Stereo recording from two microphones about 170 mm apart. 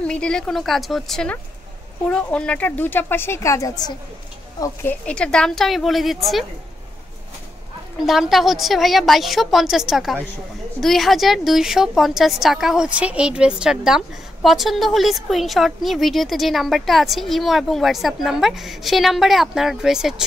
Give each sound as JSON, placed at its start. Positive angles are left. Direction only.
{"t": 0.0, "sound": "a woman's voice", "side_deg": 5}
{"t": 4.8, "sound": "a woman's voice", "side_deg": 5}
{"t": 8.0, "sound": "a woman's voice", "side_deg": 0}